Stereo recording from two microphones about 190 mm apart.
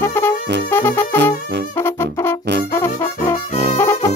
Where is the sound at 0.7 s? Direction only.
10° left (ahead or behind).